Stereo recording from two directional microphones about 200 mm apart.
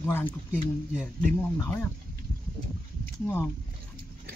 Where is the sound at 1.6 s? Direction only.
10° left (ahead or behind).